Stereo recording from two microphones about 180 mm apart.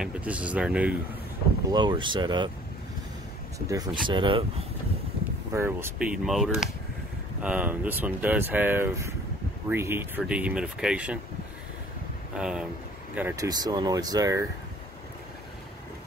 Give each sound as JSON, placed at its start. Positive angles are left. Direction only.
{"t": 0.0, "sound": "speech", "side_deg": -5}
{"t": 1.7, "sound": "speech", "side_deg": -25}
{"t": 3.5, "sound": "speech", "side_deg": -20}
{"t": 5.5, "sound": "speech", "side_deg": -15}
{"t": 12.4, "sound": "speech", "side_deg": -5}
{"t": 13.5, "sound": "speech", "side_deg": -20}